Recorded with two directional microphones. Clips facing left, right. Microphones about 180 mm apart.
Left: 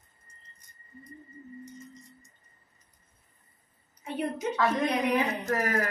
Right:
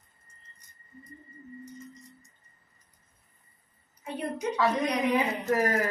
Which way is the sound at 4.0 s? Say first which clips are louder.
Left 1 dB; centre (ahead or behind).